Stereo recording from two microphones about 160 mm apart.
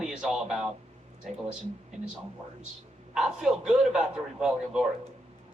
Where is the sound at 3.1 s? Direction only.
5° right (ahead or behind).